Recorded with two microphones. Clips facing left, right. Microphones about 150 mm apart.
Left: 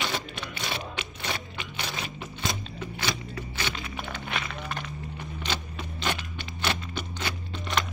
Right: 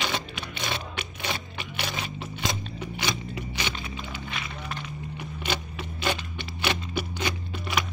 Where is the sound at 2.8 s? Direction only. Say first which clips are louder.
Right 1 dB; 15° right (ahead or behind).